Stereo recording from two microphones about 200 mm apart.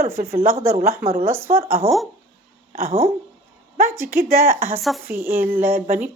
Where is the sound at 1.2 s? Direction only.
10° right (ahead or behind).